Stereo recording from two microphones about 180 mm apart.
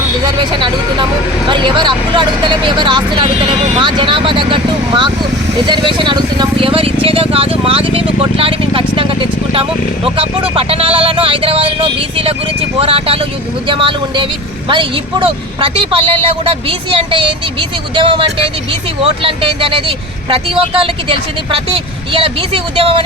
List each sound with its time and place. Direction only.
0.3 s speech: 25° right (ahead or behind)